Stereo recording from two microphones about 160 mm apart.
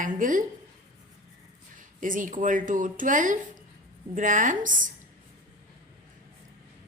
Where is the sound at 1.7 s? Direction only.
55° right (ahead or behind).